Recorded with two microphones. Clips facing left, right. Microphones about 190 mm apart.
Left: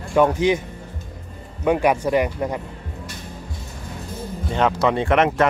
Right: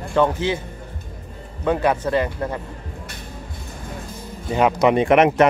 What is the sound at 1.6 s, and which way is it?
Speech, 15° left (ahead or behind).